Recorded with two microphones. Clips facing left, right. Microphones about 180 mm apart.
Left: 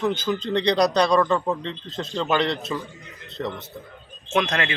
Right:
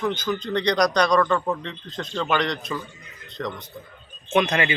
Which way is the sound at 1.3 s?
10° left (ahead or behind).